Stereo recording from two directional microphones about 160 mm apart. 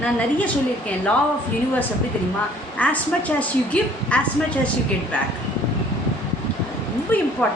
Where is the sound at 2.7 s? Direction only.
10° left (ahead or behind).